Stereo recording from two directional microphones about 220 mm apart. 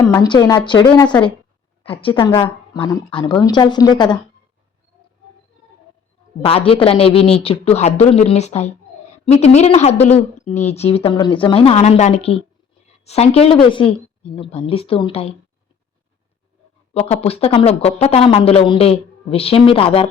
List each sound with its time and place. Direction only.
0.1 s a woman's voice: 15° left (ahead or behind)
6.4 s speech: 25° left (ahead or behind)
16.9 s speech: 30° left (ahead or behind)